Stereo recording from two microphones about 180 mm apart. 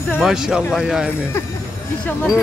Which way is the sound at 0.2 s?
5° right (ahead or behind).